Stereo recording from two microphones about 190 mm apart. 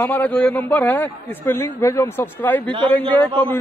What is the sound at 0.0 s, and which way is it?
A man's voice, 10° left (ahead or behind).